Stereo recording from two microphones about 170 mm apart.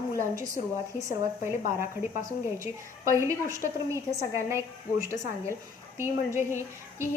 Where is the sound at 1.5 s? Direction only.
15° right (ahead or behind).